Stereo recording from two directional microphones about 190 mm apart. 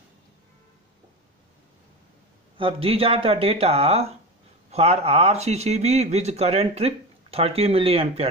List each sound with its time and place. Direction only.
2.5 s speech: 30° right (ahead or behind)